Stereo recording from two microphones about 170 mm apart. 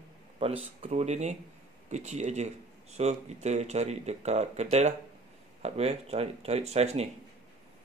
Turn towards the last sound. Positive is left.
turn(degrees=-40)  # may be behind; listen again after turning